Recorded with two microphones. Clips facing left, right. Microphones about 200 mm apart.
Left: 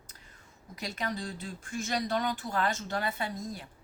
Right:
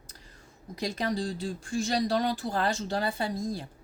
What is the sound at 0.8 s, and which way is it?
A woman's voice, 35° right (ahead or behind).